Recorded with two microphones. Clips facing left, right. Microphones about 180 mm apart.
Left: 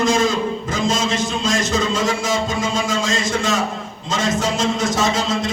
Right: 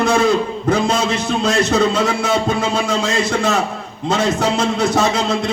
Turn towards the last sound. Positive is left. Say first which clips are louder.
# right 3 dB
turn(degrees=-65)  # may be behind; listen again after turning